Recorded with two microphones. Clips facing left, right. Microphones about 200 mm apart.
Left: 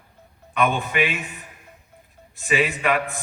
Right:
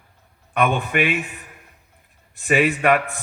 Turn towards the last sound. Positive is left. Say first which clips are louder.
# right 4 dB
turn(degrees=-55)  # may be behind; listen again after turning